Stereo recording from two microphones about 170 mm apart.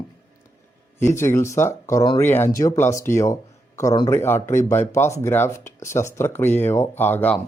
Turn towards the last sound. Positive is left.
turn(degrees=10)  # may be behind; listen again after turning